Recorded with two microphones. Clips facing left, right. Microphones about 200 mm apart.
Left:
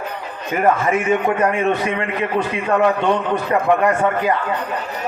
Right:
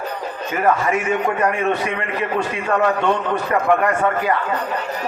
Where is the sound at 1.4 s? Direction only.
25° left (ahead or behind).